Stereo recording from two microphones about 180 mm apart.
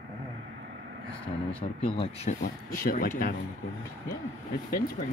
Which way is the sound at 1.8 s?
30° left (ahead or behind).